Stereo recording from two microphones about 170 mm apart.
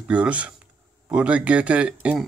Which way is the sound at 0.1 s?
10° right (ahead or behind).